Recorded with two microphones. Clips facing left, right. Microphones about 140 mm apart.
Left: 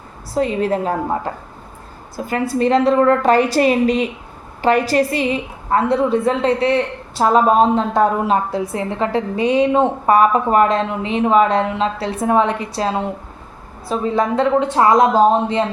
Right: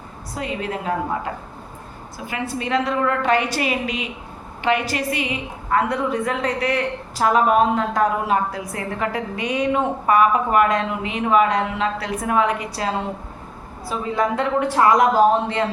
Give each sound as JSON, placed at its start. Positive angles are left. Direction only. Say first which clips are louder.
{"t": 0.3, "sound": "a woman's voice", "louder": "left 9 dB", "side_deg": 35}